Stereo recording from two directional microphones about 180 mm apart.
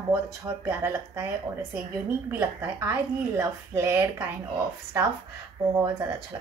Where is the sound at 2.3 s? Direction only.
15° right (ahead or behind).